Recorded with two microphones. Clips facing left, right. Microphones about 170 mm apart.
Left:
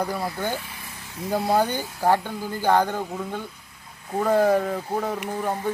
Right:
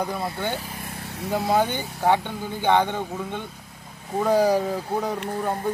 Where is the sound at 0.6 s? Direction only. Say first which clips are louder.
Right 4 dB; 45° right (ahead or behind).